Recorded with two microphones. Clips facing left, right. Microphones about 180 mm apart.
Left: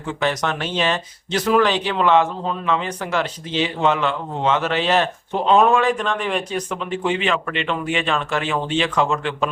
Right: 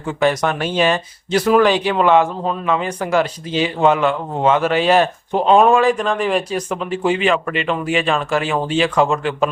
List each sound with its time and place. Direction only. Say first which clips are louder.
0.2 s speech: right 6 dB; 10° right (ahead or behind)